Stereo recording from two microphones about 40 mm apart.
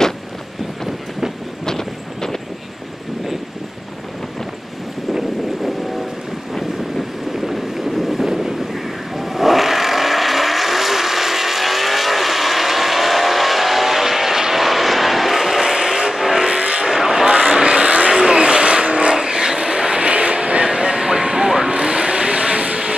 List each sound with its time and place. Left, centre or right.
1.7 s vehicle: centre
5.1 s vehicle: centre
7.3 s boat: centre
9.1 s vehicle: centre
16.4 s vehicle: right
16.8 s vehicle: centre; by 18.1 s right
18.1 s vehicle: centre
20.6 s music: centre
21.5 s vehicle: centre